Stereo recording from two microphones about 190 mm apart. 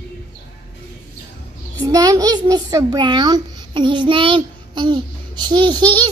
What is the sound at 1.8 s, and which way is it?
A child's voice, 20° right (ahead or behind).